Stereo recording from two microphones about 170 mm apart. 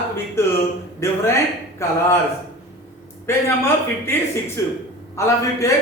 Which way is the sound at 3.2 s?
15° left (ahead or behind).